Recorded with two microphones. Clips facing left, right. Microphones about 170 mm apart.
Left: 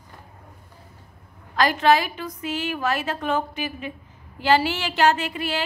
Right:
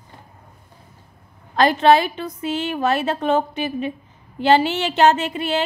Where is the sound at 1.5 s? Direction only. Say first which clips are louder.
Right 4 dB; 30° right (ahead or behind).